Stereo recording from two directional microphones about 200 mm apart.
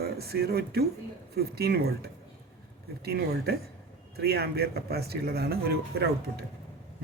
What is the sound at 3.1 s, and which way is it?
Speech, 55° right (ahead or behind).